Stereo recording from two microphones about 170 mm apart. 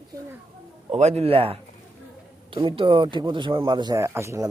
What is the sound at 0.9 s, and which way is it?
A man's voice, 40° right (ahead or behind).